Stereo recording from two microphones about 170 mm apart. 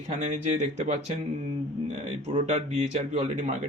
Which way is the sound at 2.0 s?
35° right (ahead or behind).